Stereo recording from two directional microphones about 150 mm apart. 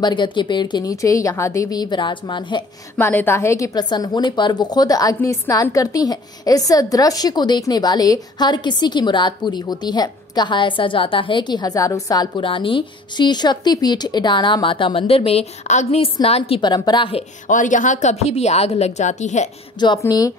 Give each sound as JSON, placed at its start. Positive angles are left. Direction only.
{"t": 0.0, "sound": "a woman's voice", "side_deg": 30}
{"t": 3.0, "sound": "a woman's voice", "side_deg": 15}
{"t": 17.5, "sound": "a woman's voice", "side_deg": 60}
{"t": 20.0, "sound": "a woman's voice", "side_deg": 25}